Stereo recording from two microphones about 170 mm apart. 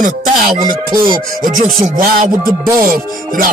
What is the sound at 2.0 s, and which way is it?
Music, 55° right (ahead or behind).